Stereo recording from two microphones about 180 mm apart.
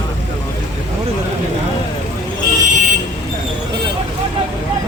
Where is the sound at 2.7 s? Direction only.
45° right (ahead or behind).